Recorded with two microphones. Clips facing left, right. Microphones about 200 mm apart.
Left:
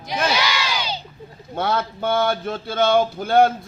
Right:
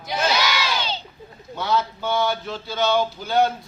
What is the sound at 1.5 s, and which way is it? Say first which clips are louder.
Speech: left 1 dB; 55° left (ahead or behind).